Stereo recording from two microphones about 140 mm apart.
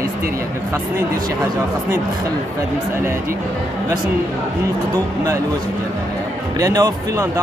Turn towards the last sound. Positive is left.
turn(degrees=-25)  # may be behind; listen again after turning